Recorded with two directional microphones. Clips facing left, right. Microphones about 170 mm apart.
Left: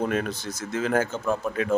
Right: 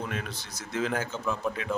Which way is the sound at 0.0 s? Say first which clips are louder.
Left 9 dB; 50° left (ahead or behind).